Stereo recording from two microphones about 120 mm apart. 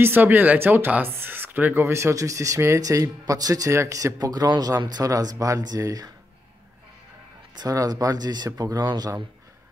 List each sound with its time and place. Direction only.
0.0 s speech: 15° right (ahead or behind)
7.5 s speech: 30° right (ahead or behind)